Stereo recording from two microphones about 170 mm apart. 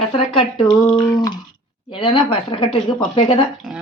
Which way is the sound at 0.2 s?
30° left (ahead or behind).